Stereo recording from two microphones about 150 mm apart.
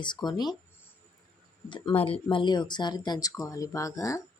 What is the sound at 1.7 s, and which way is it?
Speech, 35° left (ahead or behind).